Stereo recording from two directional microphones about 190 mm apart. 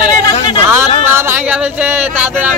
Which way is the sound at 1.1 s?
10° right (ahead or behind).